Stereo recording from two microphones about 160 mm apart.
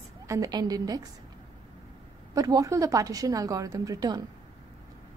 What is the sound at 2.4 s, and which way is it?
A woman's voice, 20° right (ahead or behind).